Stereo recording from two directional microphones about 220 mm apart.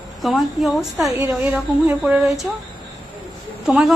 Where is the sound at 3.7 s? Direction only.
Centre (ahead or behind).